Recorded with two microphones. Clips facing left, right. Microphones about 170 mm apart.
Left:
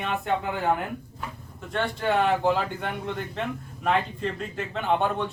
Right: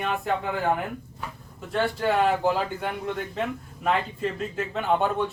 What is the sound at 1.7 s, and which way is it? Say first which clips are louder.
Speech: right 1 dB; 5° right (ahead or behind).